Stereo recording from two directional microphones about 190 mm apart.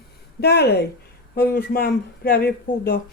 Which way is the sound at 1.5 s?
50° left (ahead or behind).